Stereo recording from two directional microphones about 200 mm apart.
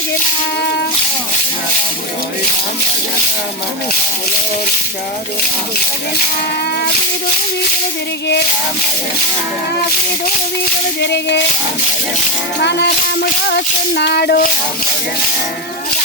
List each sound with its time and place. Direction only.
11.0 s speech: 60° left (ahead or behind)
12.5 s speech: 60° left (ahead or behind)